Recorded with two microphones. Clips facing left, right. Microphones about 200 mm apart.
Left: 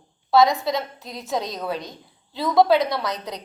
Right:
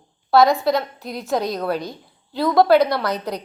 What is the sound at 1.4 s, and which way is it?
A woman's voice, 65° right (ahead or behind).